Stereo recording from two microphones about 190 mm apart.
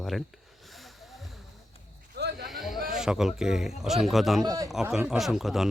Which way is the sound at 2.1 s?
60° right (ahead or behind).